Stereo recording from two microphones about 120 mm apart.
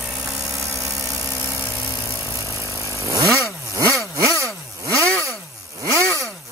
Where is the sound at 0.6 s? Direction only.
25° right (ahead or behind).